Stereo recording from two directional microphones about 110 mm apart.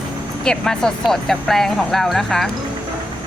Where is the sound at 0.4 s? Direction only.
5° left (ahead or behind).